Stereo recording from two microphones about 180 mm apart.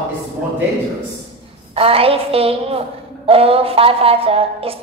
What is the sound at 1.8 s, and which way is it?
A woman's voice, 30° right (ahead or behind).